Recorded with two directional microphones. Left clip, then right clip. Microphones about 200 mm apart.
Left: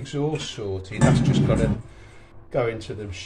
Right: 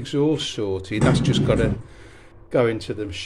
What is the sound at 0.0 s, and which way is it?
Speech, 60° right (ahead or behind).